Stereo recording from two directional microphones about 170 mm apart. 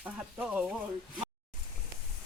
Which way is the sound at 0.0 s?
5° right (ahead or behind).